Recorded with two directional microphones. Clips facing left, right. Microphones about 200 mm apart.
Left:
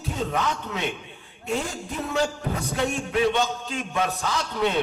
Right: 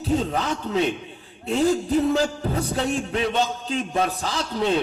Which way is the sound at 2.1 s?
30° right (ahead or behind).